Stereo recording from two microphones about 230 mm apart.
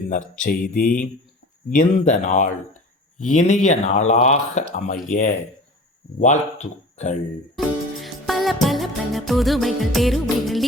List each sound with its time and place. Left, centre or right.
0.1 s speech: left
8.0 s music: centre